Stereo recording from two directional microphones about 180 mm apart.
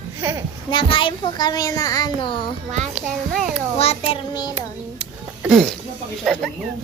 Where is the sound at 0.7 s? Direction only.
25° left (ahead or behind).